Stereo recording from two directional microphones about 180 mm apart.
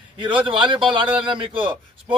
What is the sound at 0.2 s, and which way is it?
A man's voice, 25° right (ahead or behind).